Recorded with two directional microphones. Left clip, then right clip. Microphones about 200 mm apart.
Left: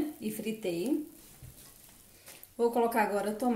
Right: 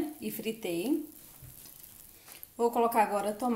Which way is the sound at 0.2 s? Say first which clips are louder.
Even; 25° right (ahead or behind).